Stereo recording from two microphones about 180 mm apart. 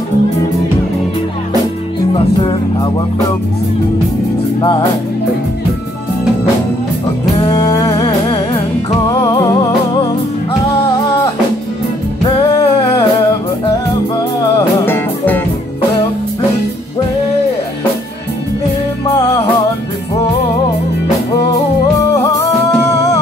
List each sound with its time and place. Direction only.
2.1 s music: 30° left (ahead or behind)
4.6 s music: 25° left (ahead or behind)
7.5 s music: 20° left (ahead or behind)
12.4 s music: 30° left (ahead or behind)
14.9 s music: 10° left (ahead or behind)
22.0 s music: 20° left (ahead or behind)